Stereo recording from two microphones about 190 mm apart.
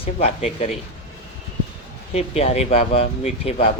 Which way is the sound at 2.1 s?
35° left (ahead or behind).